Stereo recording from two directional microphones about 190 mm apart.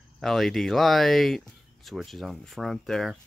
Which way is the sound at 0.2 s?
Centre (ahead or behind).